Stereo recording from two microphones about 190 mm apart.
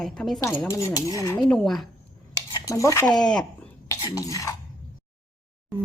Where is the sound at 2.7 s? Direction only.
15° left (ahead or behind).